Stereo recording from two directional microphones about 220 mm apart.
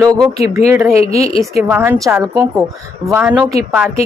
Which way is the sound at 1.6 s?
5° right (ahead or behind).